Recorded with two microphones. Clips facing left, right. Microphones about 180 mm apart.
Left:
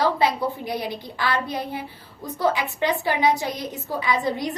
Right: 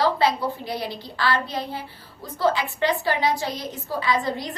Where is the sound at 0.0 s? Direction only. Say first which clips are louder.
Even; 20° left (ahead or behind).